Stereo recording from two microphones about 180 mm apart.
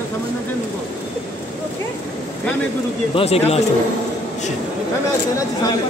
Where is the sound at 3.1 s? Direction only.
35° left (ahead or behind).